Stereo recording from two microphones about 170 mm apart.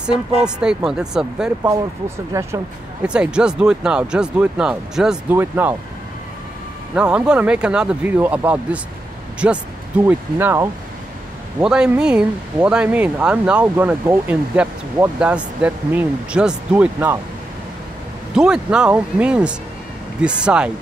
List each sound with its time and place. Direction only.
0.4 s speech: 5° right (ahead or behind)
1.7 s speech: 15° right (ahead or behind)
3.1 s speech: 5° right (ahead or behind)
7.0 s speech: 5° right (ahead or behind)
18.3 s speech: 5° right (ahead or behind)